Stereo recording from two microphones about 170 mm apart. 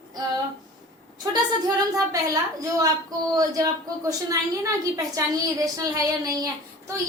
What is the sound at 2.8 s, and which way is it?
A woman's voice, 20° right (ahead or behind).